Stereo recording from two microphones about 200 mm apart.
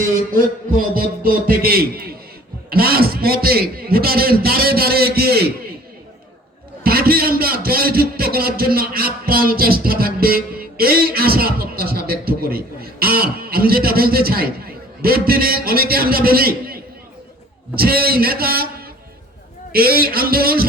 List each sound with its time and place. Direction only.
0.3 s a man's voice: 45° right (ahead or behind)
6.8 s a man's voice: 50° right (ahead or behind)
17.7 s a man's voice: 50° right (ahead or behind)